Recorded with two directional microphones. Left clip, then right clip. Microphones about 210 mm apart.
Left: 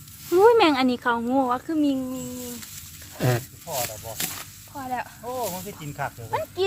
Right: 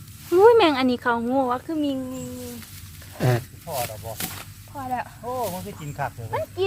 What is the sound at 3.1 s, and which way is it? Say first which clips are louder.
Speech: right 1 dB; 10° left (ahead or behind).